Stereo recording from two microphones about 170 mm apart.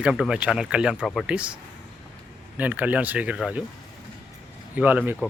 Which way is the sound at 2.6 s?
10° right (ahead or behind).